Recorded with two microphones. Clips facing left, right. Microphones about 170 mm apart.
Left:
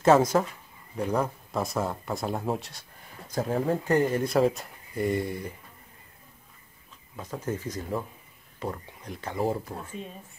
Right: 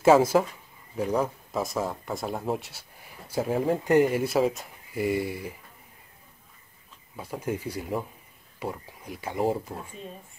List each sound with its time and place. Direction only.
0.0 s speech: 5° right (ahead or behind)
7.2 s speech: 10° right (ahead or behind)
9.3 s speech: 20° right (ahead or behind)